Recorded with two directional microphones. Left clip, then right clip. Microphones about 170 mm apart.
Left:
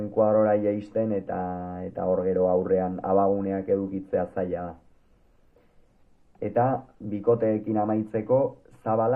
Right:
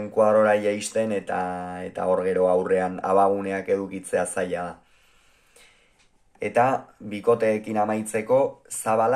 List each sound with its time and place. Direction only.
0.2 s speech: 25° right (ahead or behind)
6.4 s speech: 20° right (ahead or behind)